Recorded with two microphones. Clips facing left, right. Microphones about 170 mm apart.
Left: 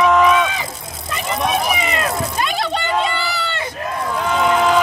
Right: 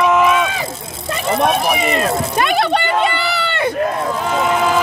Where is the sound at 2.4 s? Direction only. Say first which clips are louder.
Right 8 dB; 65° right (ahead or behind).